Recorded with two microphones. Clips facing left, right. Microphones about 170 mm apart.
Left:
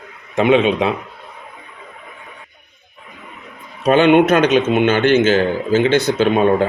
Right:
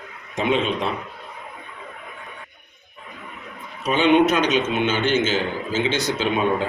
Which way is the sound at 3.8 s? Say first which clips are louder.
Left 6 dB; 65° left (ahead or behind).